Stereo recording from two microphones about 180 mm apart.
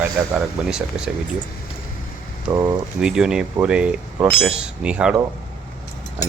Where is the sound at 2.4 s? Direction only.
20° right (ahead or behind).